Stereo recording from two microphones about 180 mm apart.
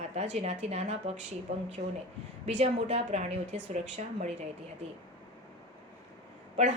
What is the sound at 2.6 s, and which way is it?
A woman's voice, 40° right (ahead or behind).